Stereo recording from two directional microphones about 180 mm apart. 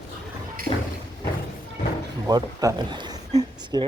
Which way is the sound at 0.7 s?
30° left (ahead or behind).